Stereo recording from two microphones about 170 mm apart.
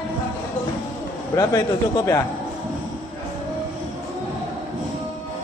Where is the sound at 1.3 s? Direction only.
20° left (ahead or behind).